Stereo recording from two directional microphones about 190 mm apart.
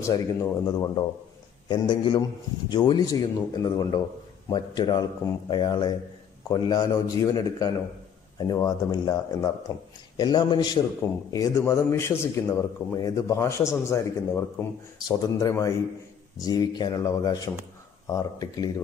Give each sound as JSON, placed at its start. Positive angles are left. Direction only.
{"t": 0.0, "sound": "a man's voice", "side_deg": 15}